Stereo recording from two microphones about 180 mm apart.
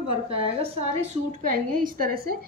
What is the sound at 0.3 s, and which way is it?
A woman's voice, 35° right (ahead or behind).